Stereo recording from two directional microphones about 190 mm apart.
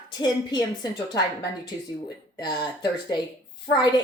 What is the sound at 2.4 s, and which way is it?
Speech, 20° left (ahead or behind).